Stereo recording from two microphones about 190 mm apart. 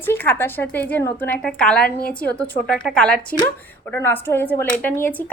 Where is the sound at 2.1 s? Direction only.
10° left (ahead or behind).